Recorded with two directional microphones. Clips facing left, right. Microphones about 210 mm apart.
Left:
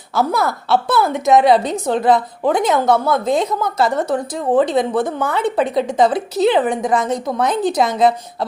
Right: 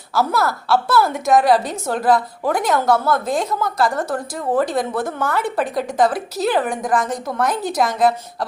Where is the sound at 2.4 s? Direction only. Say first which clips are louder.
Left 3 dB; 20° left (ahead or behind).